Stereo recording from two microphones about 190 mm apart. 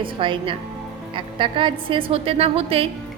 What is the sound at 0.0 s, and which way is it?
A woman's voice, 25° right (ahead or behind).